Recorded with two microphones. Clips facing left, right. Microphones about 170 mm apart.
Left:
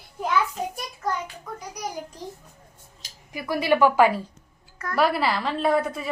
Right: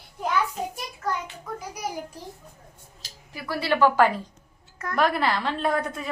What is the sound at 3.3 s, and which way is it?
A woman's voice, 15° left (ahead or behind).